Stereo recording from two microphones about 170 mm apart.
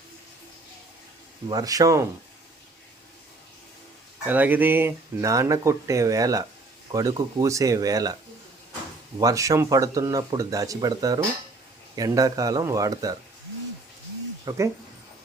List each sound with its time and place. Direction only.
1.5 s speech: 20° right (ahead or behind)
4.3 s speech: 10° right (ahead or behind)
9.1 s speech: 20° right (ahead or behind)
14.4 s speech: 15° right (ahead or behind)